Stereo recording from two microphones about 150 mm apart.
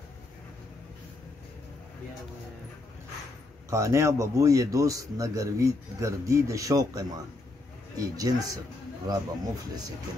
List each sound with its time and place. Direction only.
3.7 s a man's voice: 20° right (ahead or behind)